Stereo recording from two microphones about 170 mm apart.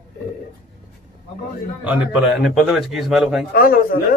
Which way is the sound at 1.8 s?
10° right (ahead or behind).